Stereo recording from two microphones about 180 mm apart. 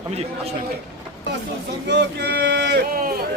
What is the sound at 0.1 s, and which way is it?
Speech, 35° right (ahead or behind).